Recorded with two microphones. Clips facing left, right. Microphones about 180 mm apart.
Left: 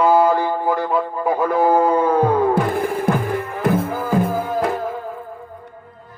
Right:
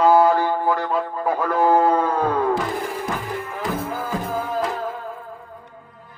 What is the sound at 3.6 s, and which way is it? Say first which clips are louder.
Music: left 8 dB; 55° left (ahead or behind).